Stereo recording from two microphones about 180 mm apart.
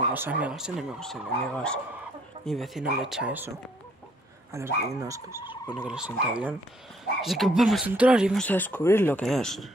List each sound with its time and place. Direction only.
0.1 s speech: 10° right (ahead or behind)
5.5 s speech: 5° right (ahead or behind)
8.4 s speech: 10° left (ahead or behind)
9.2 s speech: centre (ahead or behind)